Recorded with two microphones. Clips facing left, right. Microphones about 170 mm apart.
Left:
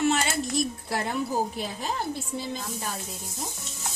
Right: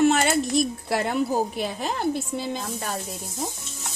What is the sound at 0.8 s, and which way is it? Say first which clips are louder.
Speech: right 5 dB; 80° right.